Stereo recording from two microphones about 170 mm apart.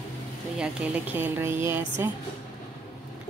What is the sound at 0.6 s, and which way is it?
A woman's voice, 5° right (ahead or behind).